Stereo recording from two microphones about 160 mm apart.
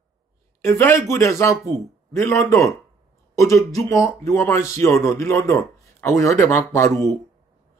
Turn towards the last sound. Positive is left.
turn(degrees=20)  # may be behind; listen again after turning